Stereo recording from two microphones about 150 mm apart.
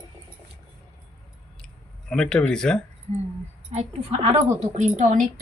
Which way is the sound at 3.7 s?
45° right (ahead or behind).